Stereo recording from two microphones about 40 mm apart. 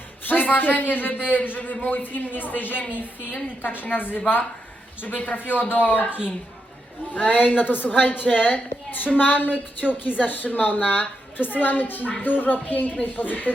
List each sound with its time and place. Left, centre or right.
0.3 s a man's voice: left
7.1 s a man's voice: left